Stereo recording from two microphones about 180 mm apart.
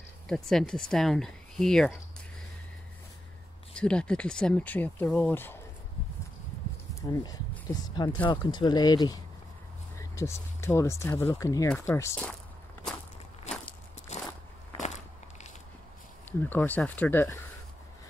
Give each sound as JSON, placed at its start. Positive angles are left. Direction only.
{"t": 0.3, "sound": "speech", "side_deg": 0}
{"t": 3.7, "sound": "speech", "side_deg": 5}
{"t": 7.0, "sound": "speech", "side_deg": 20}
{"t": 14.8, "sound": "biting", "side_deg": 40}
{"t": 16.3, "sound": "speech", "side_deg": 10}